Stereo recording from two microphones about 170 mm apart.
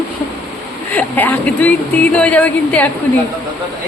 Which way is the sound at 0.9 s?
10° left (ahead or behind).